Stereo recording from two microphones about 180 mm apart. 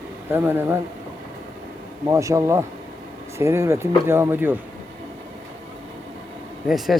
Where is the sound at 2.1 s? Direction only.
15° right (ahead or behind).